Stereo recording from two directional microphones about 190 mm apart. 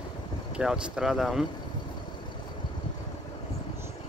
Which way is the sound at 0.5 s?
5° right (ahead or behind).